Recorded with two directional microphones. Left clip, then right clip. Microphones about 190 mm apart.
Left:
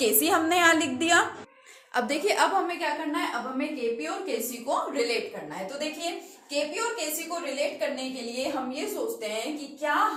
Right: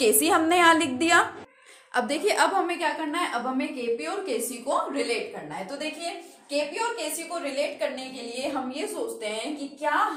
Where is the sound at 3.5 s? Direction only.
60° right (ahead or behind).